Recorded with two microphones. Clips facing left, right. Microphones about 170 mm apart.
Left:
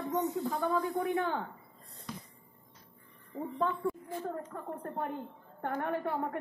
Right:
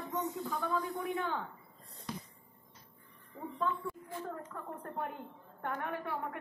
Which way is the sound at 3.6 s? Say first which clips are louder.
Left 4 dB; 40° left (ahead or behind).